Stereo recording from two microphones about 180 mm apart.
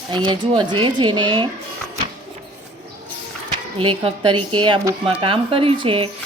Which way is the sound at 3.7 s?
30° right (ahead or behind).